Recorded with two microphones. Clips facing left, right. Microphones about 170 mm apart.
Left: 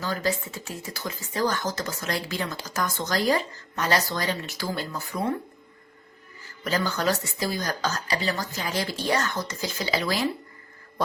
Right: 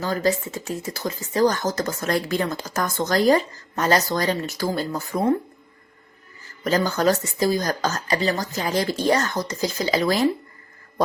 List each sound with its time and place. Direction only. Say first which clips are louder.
0.0 s speech: right 5 dB; 40° right (ahead or behind)
6.7 s speech: right 6 dB; 45° right (ahead or behind)